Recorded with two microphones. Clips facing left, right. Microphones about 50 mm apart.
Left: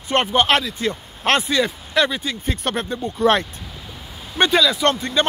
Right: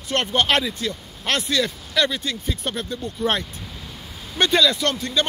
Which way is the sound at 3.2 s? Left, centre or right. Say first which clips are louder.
Left 7 dB; left.